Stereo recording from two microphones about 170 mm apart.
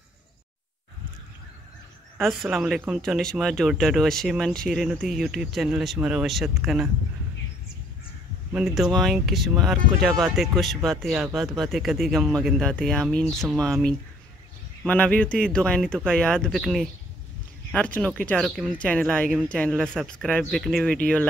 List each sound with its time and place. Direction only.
2.1 s speech: centre (ahead or behind)
8.5 s speech: 5° right (ahead or behind)